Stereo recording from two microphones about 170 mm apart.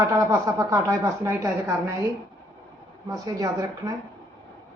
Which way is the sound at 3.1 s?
20° right (ahead or behind).